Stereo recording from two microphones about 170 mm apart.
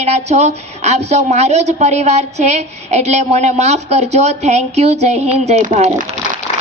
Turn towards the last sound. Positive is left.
turn(degrees=-40)  # may be behind; listen again after turning